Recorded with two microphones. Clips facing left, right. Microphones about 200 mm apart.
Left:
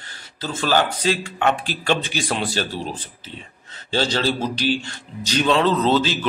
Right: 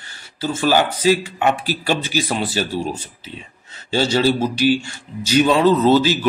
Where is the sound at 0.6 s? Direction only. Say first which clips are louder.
Right 3 dB; 10° right (ahead or behind).